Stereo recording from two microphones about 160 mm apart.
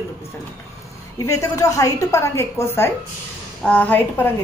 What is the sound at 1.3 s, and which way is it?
A woman's voice, 20° left (ahead or behind).